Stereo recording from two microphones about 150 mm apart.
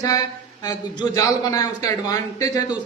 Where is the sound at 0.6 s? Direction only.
25° left (ahead or behind).